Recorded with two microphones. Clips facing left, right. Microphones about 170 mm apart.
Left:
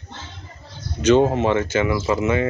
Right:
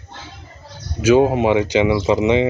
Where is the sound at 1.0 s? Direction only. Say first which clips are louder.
Right 2 dB; 10° right (ahead or behind).